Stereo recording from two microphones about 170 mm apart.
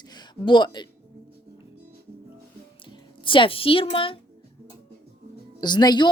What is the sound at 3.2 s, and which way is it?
Speech, 30° left (ahead or behind).